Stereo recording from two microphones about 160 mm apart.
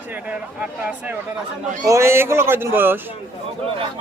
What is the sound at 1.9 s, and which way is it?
A man's voice, 15° right (ahead or behind).